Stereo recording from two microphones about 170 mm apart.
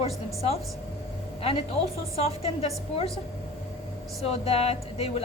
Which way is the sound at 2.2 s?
35° left (ahead or behind).